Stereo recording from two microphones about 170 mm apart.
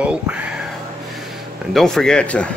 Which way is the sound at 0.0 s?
5° right (ahead or behind).